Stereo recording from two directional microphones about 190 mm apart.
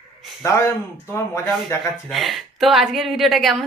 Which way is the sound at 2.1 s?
Centre (ahead or behind).